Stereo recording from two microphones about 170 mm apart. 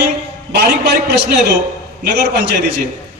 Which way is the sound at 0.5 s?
75° right (ahead or behind).